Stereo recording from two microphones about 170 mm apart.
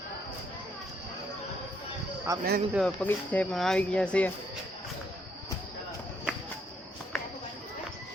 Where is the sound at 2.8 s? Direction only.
Centre (ahead or behind).